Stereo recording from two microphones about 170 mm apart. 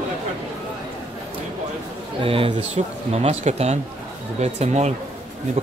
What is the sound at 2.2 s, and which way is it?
Speech, 35° right (ahead or behind).